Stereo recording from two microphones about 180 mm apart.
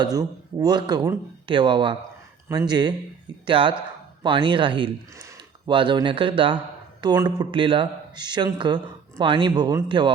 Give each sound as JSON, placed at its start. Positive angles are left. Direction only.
{"t": 0.0, "sound": "speech", "side_deg": -20}